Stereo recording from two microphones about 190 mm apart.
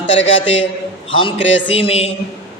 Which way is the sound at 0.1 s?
80° left.